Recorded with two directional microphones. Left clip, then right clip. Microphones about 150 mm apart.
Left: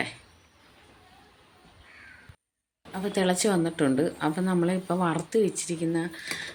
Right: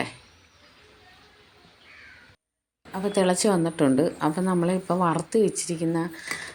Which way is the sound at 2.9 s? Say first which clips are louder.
Right 3 dB; 5° right (ahead or behind).